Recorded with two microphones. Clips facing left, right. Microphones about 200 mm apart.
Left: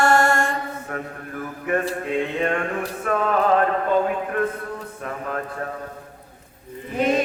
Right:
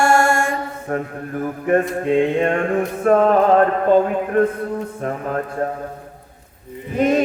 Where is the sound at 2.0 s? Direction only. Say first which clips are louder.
Right 7 dB; 35° right (ahead or behind).